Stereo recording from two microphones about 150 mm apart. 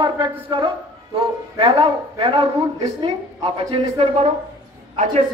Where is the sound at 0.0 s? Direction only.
35° right (ahead or behind).